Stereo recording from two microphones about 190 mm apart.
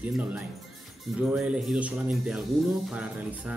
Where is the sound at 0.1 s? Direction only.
5° right (ahead or behind).